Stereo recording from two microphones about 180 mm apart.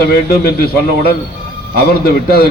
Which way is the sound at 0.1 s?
60° left (ahead or behind).